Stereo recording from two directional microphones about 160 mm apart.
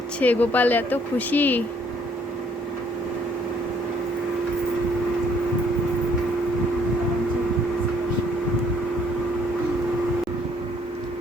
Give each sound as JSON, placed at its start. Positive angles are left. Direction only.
{"t": 0.2, "sound": "speech", "side_deg": 10}